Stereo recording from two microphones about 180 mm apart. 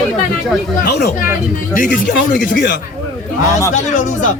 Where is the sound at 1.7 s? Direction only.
50° left (ahead or behind).